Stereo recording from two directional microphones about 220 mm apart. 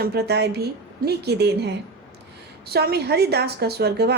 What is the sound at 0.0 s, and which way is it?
A woman's voice, 45° right (ahead or behind).